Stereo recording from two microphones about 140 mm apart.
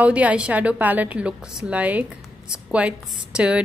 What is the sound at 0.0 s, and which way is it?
A woman's voice, 10° right (ahead or behind).